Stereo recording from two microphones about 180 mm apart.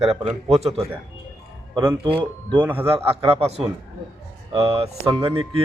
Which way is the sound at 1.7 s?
20° right (ahead or behind).